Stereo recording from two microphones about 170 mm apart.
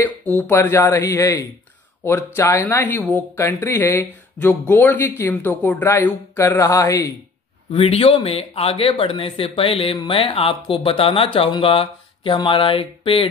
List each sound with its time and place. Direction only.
0.5 s speech: 15° left (ahead or behind)
7.7 s speech: 35° left (ahead or behind)